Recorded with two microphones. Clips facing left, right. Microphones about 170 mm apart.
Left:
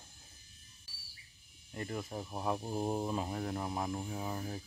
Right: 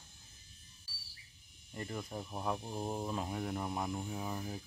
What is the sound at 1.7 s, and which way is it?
Speech, centre (ahead or behind).